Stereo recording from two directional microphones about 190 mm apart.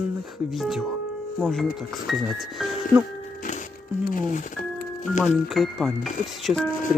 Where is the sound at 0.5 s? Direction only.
Centre (ahead or behind).